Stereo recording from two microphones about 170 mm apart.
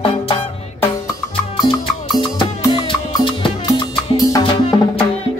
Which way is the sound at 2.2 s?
30° left (ahead or behind).